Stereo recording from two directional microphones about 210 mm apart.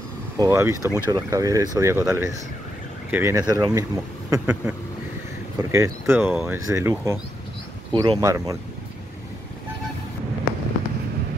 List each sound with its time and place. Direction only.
0.4 s speech: 15° right (ahead or behind)